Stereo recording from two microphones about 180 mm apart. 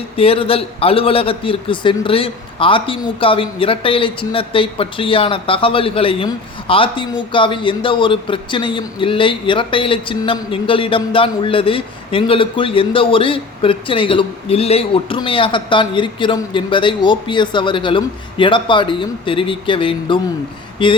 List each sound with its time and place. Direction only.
0.2 s a man's voice: 30° left (ahead or behind)